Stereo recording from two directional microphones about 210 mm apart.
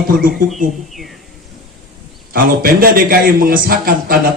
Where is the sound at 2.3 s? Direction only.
45° right (ahead or behind).